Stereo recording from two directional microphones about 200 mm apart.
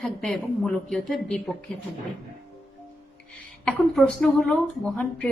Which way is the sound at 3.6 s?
5° left (ahead or behind).